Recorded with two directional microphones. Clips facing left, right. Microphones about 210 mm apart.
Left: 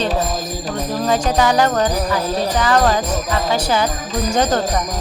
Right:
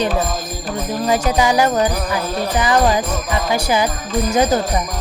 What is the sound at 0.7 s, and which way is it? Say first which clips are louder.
Jingle bell: right 1 dB; 10° right (ahead or behind).